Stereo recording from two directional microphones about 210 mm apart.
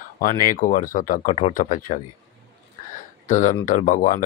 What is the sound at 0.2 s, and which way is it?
Speech, 40° left (ahead or behind).